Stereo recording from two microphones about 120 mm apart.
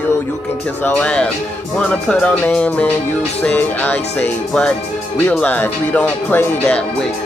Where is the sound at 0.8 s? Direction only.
10° left (ahead or behind).